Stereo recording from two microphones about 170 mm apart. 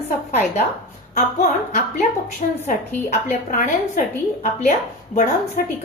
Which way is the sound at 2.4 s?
45° left (ahead or behind).